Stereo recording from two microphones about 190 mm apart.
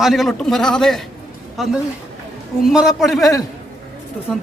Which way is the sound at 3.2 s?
15° left (ahead or behind).